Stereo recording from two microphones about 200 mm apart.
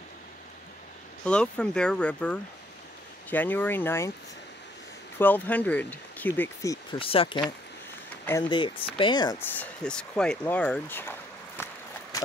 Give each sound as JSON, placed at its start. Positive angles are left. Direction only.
{"t": 1.2, "sound": "speech", "side_deg": 5}
{"t": 5.2, "sound": "speech", "side_deg": 10}
{"t": 10.4, "sound": "a sound", "side_deg": 10}